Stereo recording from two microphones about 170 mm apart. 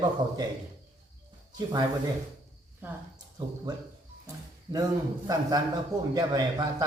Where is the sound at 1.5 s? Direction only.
25° right (ahead or behind).